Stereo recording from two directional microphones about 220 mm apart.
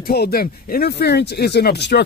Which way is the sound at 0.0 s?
45° left (ahead or behind).